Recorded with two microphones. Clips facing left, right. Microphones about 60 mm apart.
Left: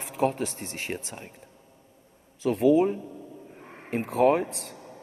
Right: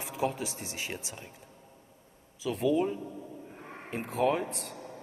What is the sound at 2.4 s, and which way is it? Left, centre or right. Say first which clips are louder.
A man's voice: left 7 dB; left.